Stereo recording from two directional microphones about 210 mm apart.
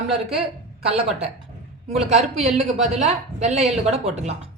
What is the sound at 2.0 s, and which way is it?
Speech, 30° right (ahead or behind).